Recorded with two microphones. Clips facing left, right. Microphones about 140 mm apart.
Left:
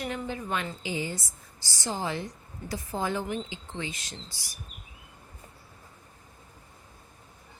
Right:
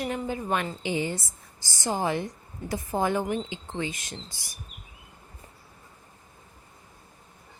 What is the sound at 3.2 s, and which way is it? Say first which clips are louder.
Speech: right 4 dB; 20° right (ahead or behind).